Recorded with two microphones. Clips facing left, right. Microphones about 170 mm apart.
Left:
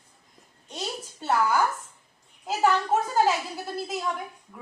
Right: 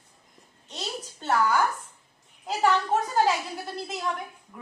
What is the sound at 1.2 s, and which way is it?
Speech, 10° left (ahead or behind).